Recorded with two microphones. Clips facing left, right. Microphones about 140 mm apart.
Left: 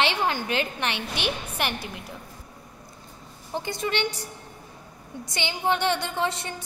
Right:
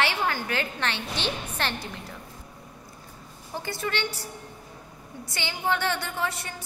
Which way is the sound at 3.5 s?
20° left (ahead or behind).